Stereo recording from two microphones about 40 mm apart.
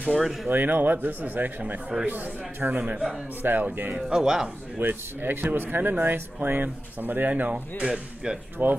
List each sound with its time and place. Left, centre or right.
0.2 s speech: centre
0.5 s speech: right
2.8 s a man's voice: right
3.4 s speech: right
4.1 s speech: centre
4.7 s speech: right
6.1 s speech: right
7.8 s speech: centre
8.6 s speech: right